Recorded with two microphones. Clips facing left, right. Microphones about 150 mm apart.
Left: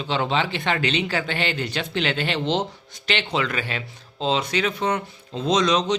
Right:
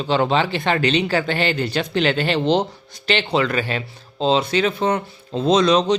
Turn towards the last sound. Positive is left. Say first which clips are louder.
# right 5 dB
turn(degrees=-35)  # may be behind; listen again after turning